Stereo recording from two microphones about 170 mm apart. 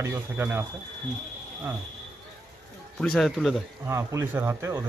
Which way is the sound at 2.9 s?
Centre (ahead or behind).